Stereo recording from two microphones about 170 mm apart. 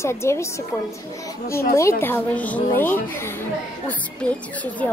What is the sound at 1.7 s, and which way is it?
A woman's voice, 15° left (ahead or behind).